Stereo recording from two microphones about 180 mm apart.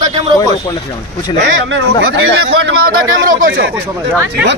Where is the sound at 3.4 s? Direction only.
90° right.